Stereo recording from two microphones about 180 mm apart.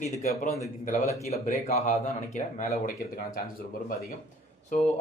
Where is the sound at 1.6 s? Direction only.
40° left (ahead or behind).